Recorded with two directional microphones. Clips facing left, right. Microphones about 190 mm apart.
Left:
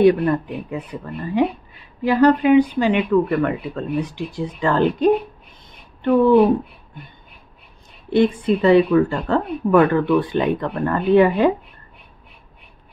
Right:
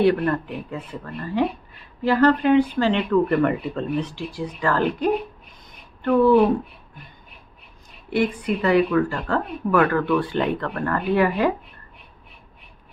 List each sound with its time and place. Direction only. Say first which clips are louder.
0.0 s speech: left 4 dB; 15° left (ahead or behind)
3.3 s speech: even; centre (ahead or behind)
4.0 s speech: left 3 dB; 20° left (ahead or behind)
8.1 s speech: left 6 dB; 25° left (ahead or behind)